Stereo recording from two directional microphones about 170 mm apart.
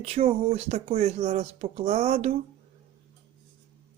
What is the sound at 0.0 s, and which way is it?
Speech, 35° right (ahead or behind).